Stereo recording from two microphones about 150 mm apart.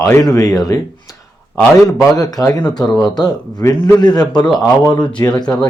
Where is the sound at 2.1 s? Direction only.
25° left (ahead or behind).